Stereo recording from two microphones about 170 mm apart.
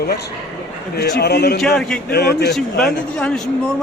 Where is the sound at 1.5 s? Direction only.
5° left (ahead or behind).